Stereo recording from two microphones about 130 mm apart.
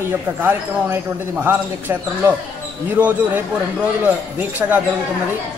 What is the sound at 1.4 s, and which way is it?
Speech, 15° right (ahead or behind).